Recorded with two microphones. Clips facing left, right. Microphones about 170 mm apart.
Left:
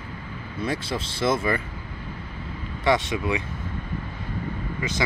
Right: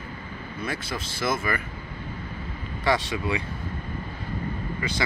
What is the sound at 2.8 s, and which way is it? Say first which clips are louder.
Speech: left 2 dB; 20° left (ahead or behind).